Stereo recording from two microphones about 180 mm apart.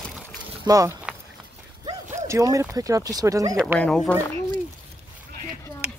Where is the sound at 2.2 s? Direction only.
15° right (ahead or behind).